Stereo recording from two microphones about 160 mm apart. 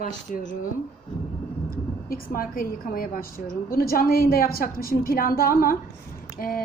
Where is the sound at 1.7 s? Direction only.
65° left (ahead or behind).